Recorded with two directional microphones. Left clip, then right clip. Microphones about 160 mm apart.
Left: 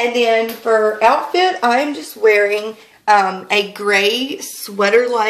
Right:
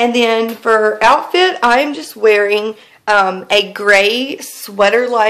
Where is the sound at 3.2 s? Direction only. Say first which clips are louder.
Right 3 dB; 35° right (ahead or behind).